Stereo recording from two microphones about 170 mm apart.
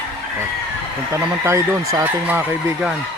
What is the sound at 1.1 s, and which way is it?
Speech, 15° right (ahead or behind).